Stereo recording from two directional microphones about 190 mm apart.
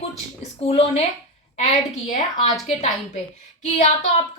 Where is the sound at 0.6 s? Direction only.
35° left (ahead or behind).